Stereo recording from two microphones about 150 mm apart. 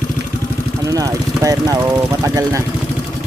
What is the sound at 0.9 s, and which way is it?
Speech, 20° right (ahead or behind).